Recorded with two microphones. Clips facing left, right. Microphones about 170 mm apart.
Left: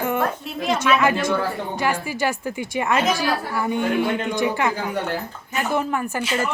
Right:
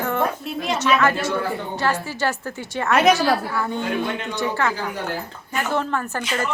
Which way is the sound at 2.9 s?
70° right (ahead or behind).